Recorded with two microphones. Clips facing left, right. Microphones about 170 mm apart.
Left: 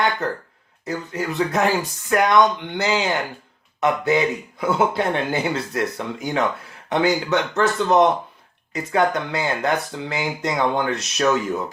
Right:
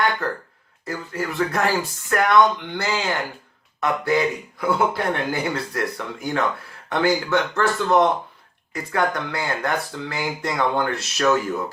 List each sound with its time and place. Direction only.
0.2 s speech: 20° left (ahead or behind)